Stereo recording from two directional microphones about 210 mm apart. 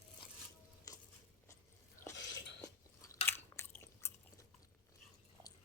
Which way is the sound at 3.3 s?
10° left (ahead or behind).